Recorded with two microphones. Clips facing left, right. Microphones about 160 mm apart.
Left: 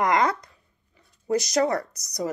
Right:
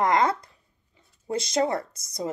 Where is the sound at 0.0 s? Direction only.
25° right (ahead or behind).